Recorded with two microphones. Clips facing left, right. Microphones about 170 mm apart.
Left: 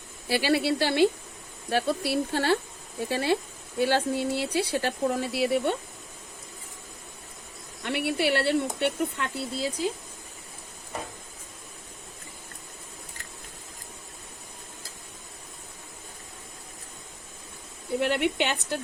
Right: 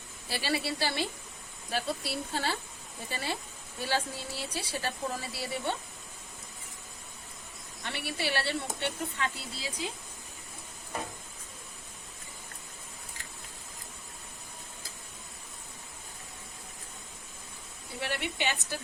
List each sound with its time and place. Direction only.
0.3 s speech: 65° left (ahead or behind)
7.9 s speech: 60° left (ahead or behind)
18.1 s speech: 60° left (ahead or behind)